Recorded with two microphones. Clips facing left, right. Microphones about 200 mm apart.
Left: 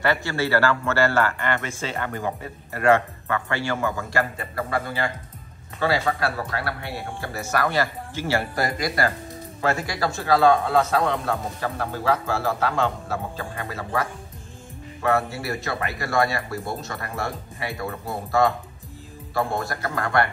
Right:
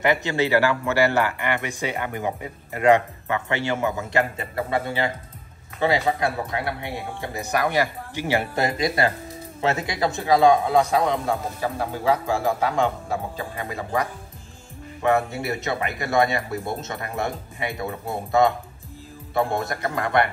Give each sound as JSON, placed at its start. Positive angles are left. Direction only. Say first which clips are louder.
{"t": 0.0, "sound": "a man's voice", "louder": "right 2 dB", "side_deg": -20}